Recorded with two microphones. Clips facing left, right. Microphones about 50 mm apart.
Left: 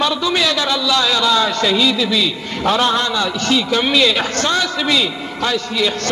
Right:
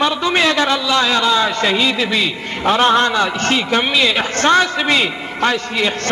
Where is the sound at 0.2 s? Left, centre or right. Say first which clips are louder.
Right 2 dB; right.